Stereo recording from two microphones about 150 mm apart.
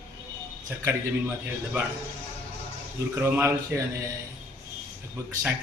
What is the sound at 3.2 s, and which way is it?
Speech, 15° right (ahead or behind).